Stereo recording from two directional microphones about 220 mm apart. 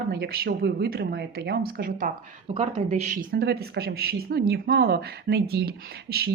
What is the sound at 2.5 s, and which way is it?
Speech, 30° right (ahead or behind).